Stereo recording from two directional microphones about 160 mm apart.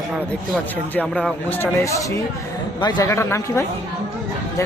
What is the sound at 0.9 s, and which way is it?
A man's voice, 10° left (ahead or behind).